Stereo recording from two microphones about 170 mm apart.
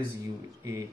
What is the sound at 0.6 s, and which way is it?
Speech, 20° right (ahead or behind).